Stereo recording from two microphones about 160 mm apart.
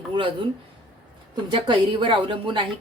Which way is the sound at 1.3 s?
30° right (ahead or behind).